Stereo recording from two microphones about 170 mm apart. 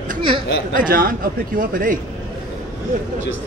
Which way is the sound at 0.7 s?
55° right (ahead or behind).